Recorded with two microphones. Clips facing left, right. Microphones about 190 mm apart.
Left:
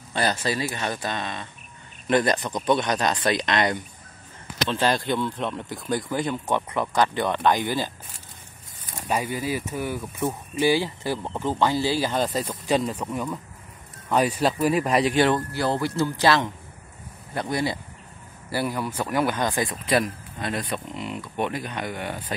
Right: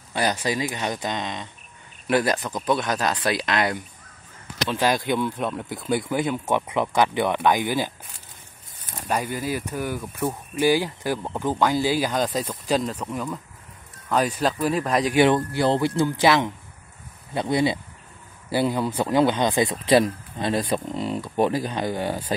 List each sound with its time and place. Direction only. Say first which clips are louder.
0.1 s speech: right 1 dB; 15° right (ahead or behind)
2.0 s speech: even; 5° right (ahead or behind)
9.0 s speech: even; 5° left (ahead or behind)
10.5 s speech: right 1 dB; 10° right (ahead or behind)
12.1 s speech: right 1 dB; centre (ahead or behind)
15.1 s speech: right 3 dB; 15° right (ahead or behind)